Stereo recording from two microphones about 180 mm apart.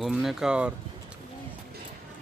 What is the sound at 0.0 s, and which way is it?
Speech, centre (ahead or behind).